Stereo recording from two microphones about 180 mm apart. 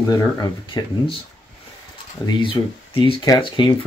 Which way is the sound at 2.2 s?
25° left (ahead or behind).